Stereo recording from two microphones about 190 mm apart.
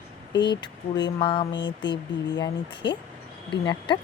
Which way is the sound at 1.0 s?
25° left (ahead or behind).